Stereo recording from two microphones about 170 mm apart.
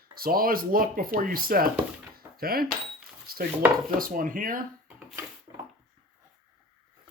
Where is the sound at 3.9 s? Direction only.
55° right (ahead or behind).